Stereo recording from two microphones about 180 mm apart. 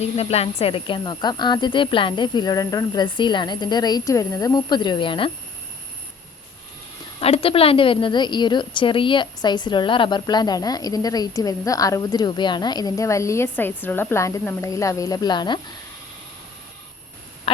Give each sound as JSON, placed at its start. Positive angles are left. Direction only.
{"t": 0.2, "sound": "a woman's voice", "side_deg": 35}
{"t": 7.2, "sound": "a woman's voice", "side_deg": 35}